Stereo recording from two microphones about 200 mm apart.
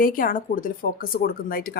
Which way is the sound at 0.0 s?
45° left (ahead or behind).